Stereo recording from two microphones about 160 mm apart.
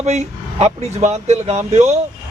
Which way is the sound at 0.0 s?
45° right (ahead or behind).